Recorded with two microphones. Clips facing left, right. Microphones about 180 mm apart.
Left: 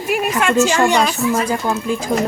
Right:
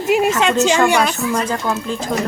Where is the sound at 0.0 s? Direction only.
25° right (ahead or behind).